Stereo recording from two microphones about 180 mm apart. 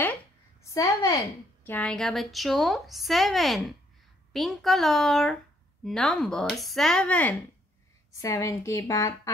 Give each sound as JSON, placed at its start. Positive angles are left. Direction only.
{"t": 0.7, "sound": "a woman's voice", "side_deg": 20}
{"t": 1.7, "sound": "a woman's voice", "side_deg": 5}